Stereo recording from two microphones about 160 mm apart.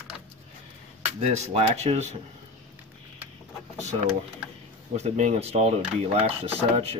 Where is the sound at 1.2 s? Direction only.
45° right (ahead or behind).